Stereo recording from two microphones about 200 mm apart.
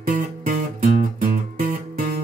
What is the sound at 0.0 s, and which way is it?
Music, 40° right (ahead or behind).